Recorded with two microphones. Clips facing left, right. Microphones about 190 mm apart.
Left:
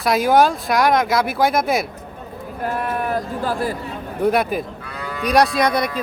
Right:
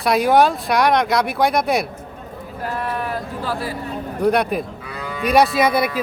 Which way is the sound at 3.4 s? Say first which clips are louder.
Left 2 dB; 45° left (ahead or behind).